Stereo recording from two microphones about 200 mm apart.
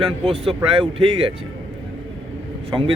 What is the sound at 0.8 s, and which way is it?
Speech, 25° right (ahead or behind).